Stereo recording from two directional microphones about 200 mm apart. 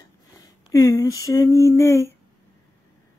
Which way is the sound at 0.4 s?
15° left (ahead or behind).